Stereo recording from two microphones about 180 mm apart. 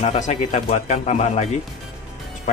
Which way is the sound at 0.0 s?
35° left (ahead or behind).